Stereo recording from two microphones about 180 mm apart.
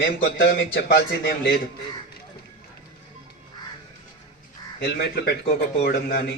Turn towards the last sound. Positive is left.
turn(degrees=60)  # may be behind; listen again after turning